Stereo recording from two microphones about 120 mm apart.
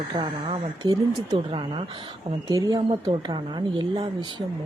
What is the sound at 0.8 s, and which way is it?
Speech, 35° right (ahead or behind).